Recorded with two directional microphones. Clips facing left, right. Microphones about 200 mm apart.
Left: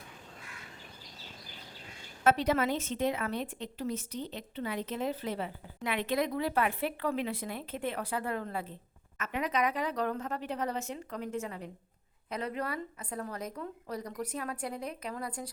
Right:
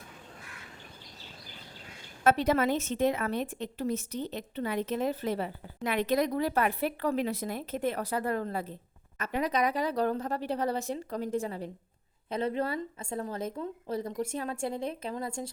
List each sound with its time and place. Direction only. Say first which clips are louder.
2.2 s a woman's voice: right 2 dB; 45° right (ahead or behind); by 15.5 s 25° right (ahead or behind)